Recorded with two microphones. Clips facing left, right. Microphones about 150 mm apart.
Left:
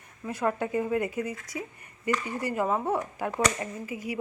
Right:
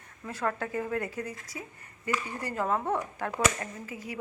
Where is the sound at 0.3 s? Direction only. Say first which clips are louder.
Left 4 dB; 15° left (ahead or behind).